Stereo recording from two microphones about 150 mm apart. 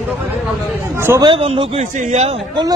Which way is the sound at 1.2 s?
35° right (ahead or behind).